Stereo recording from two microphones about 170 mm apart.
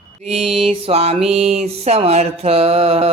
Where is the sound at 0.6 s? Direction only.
35° right (ahead or behind).